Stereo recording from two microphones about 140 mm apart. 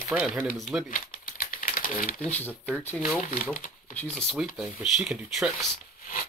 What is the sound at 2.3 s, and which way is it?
Speech, 10° left (ahead or behind).